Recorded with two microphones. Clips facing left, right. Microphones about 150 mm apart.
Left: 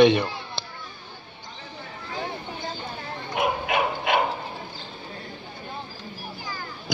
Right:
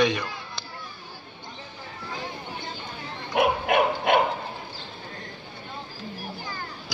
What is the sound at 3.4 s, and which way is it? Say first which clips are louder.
Dog: right 3 dB; 55° right (ahead or behind).